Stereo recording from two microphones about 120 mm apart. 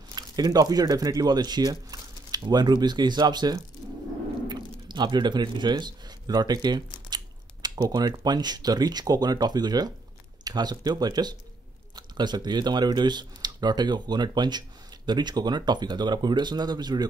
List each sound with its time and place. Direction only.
0.1 s speech: 30° right (ahead or behind)